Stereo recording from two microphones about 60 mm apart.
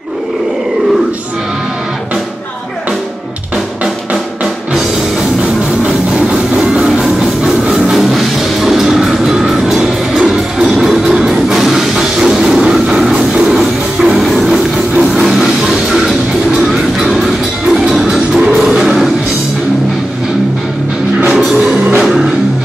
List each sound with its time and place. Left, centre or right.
5.9 s music: centre
21.3 s music: centre
21.5 s music: right